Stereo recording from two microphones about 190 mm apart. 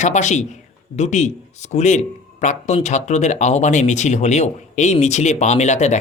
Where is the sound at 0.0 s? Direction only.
40° left (ahead or behind).